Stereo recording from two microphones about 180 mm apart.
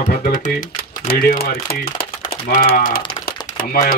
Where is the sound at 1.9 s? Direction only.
30° left (ahead or behind).